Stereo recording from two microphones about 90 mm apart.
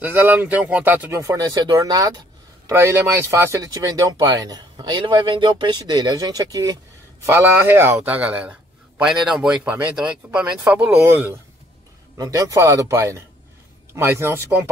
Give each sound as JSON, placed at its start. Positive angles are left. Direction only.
{"t": 0.0, "sound": "a man's voice", "side_deg": -20}
{"t": 1.1, "sound": "a man's voice", "side_deg": -40}
{"t": 7.2, "sound": "a man's voice", "side_deg": -25}
{"t": 12.2, "sound": "a man's voice", "side_deg": -35}